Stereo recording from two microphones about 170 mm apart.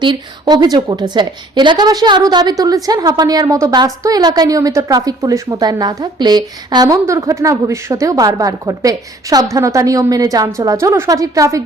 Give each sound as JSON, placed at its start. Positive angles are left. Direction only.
{"t": 0.0, "sound": "a woman's voice", "side_deg": -25}